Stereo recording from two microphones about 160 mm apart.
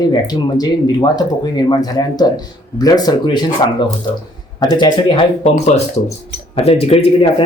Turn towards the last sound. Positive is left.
turn(degrees=35)  # may be behind; listen again after turning